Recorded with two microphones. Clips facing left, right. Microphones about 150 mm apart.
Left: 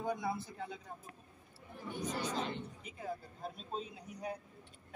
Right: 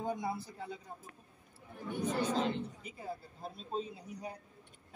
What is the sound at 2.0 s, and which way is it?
Speech, 90° right.